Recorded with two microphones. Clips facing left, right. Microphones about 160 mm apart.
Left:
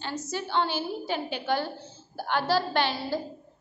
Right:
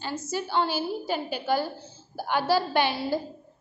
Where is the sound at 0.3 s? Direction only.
5° right (ahead or behind).